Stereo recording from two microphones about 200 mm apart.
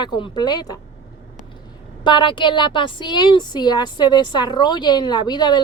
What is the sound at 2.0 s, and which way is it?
A woman's voice, 25° left (ahead or behind).